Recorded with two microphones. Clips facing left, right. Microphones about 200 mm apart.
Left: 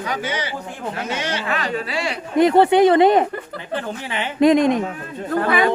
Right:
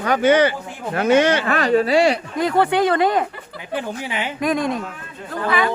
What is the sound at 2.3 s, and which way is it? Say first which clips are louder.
Speech: left 5 dB; 25° left (ahead or behind).